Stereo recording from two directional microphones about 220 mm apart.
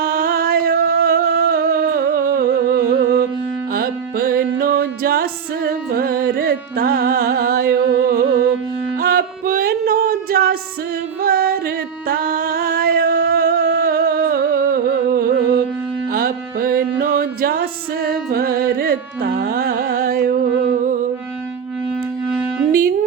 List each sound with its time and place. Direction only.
0.0 s music: 45° right (ahead or behind)